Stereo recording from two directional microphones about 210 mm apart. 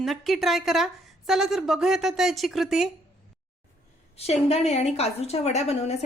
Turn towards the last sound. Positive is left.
turn(degrees=30)  # may be behind; listen again after turning